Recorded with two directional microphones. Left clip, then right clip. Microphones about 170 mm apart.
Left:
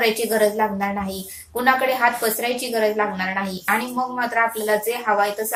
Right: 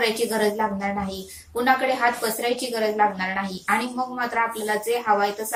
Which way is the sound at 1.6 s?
20° left (ahead or behind).